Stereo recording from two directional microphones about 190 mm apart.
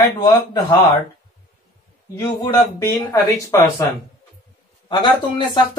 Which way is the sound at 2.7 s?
20° left (ahead or behind).